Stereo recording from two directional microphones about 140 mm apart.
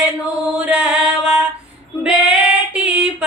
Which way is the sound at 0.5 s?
5° right (ahead or behind).